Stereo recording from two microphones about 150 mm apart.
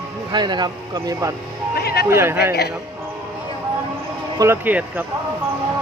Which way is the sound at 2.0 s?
15° right (ahead or behind).